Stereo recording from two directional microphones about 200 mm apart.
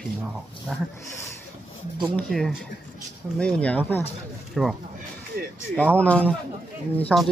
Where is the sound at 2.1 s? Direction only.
Centre (ahead or behind).